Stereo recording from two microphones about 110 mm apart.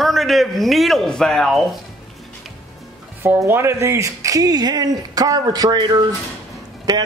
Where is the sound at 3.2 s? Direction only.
20° right (ahead or behind).